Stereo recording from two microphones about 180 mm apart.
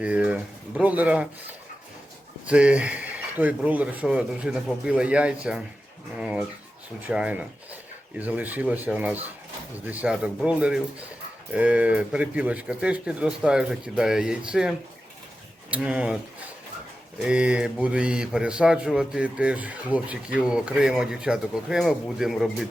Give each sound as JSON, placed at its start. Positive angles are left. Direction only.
{"t": 0.0, "sound": "speech", "side_deg": -5}
{"t": 2.5, "sound": "speech", "side_deg": -5}
{"t": 15.7, "sound": "speech", "side_deg": -5}
{"t": 17.2, "sound": "speech", "side_deg": -5}